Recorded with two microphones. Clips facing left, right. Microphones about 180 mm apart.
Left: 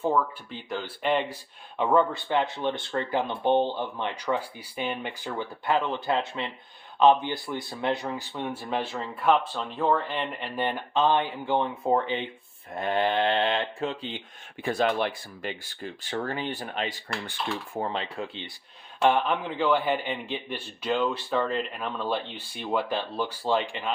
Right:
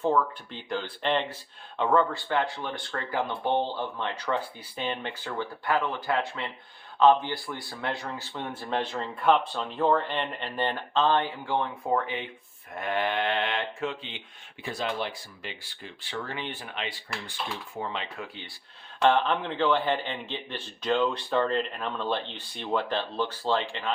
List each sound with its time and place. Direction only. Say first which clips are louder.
0.0 s speech: even; 5° left (ahead or behind); by 14.2 s 40° left (ahead or behind)
14.6 s speech: left 6 dB; 55° left (ahead or behind); by 18.3 s 40° left (ahead or behind)
19.0 s speech: even; 10° left (ahead or behind)